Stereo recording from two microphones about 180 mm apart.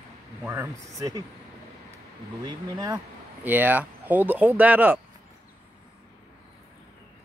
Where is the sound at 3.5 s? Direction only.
10° right (ahead or behind).